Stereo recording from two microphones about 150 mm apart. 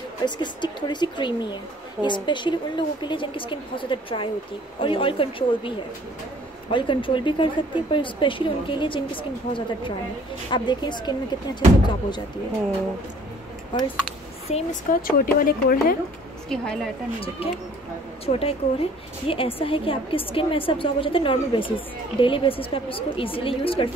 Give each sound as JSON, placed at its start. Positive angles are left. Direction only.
{"t": 0.2, "sound": "a woman's voice", "side_deg": 30}
{"t": 14.5, "sound": "a woman's voice", "side_deg": 60}
{"t": 16.4, "sound": "a woman's voice", "side_deg": 5}
{"t": 18.2, "sound": "a woman's voice", "side_deg": 40}